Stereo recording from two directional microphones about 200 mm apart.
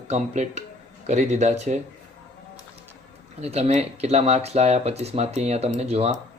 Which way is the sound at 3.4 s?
30° right (ahead or behind).